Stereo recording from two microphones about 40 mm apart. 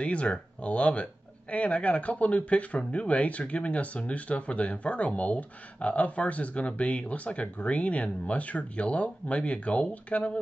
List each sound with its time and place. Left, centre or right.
0.0 s speech: left